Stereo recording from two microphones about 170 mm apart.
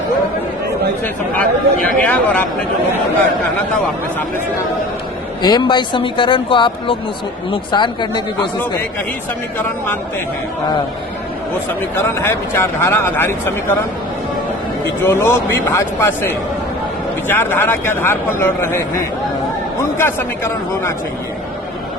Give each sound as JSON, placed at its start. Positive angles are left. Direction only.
{"t": 1.0, "sound": "a man's voice", "side_deg": 10}
{"t": 5.4, "sound": "speech", "side_deg": 25}
{"t": 9.6, "sound": "a man's voice", "side_deg": 10}
{"t": 11.9, "sound": "a man's voice", "side_deg": 15}
{"t": 15.0, "sound": "a man's voice", "side_deg": 15}
{"t": 20.0, "sound": "a man's voice", "side_deg": 15}